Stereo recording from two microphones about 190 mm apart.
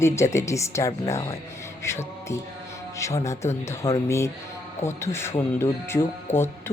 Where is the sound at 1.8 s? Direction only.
15° left (ahead or behind).